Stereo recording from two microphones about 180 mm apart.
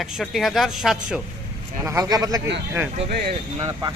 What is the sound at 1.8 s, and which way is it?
Speech, 20° right (ahead or behind).